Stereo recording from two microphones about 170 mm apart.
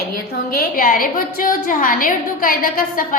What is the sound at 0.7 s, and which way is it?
A woman's voice, 55° left (ahead or behind).